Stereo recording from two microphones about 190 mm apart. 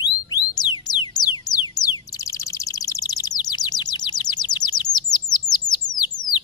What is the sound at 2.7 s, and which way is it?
Bird, 20° left (ahead or behind).